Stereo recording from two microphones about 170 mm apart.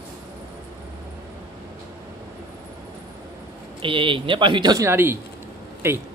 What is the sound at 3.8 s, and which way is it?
Speech, 30° right (ahead or behind).